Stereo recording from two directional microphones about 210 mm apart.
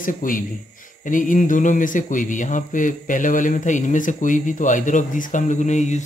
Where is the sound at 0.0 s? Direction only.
40° left (ahead or behind).